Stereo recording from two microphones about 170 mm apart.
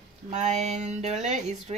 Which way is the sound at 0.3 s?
40° right (ahead or behind).